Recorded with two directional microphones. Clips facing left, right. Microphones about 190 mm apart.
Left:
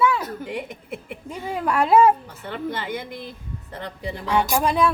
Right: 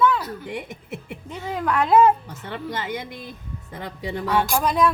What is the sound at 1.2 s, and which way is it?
Speech, 10° left (ahead or behind).